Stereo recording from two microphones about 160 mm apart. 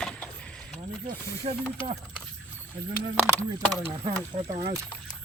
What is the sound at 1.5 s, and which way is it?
Speech, 40° right (ahead or behind).